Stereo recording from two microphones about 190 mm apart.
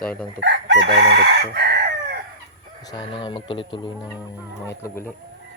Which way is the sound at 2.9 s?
25° left (ahead or behind).